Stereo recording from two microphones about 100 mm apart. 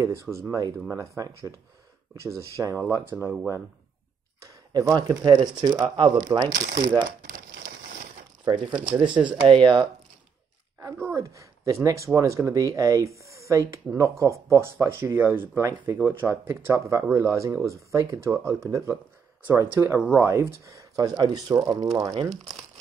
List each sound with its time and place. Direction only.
0.0 s speech: 30° right (ahead or behind)
4.7 s speech: 45° right (ahead or behind)
8.5 s speech: 50° right (ahead or behind)
8.7 s speech: 15° right (ahead or behind)
9.5 s speech: 50° right (ahead or behind)
11.1 s speech: 35° right (ahead or behind)